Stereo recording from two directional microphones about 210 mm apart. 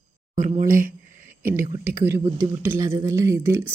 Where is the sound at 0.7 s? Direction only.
40° right (ahead or behind).